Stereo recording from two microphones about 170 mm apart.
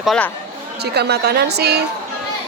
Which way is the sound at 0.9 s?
75° right (ahead or behind).